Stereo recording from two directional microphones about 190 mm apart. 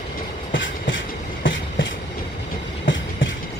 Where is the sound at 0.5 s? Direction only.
80° left.